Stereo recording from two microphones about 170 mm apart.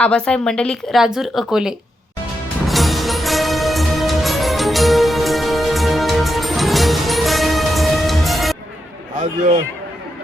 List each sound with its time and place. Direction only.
0.0 s speech: 5° left (ahead or behind)
2.6 s music: centre (ahead or behind)
9.1 s a man's voice: 45° right (ahead or behind)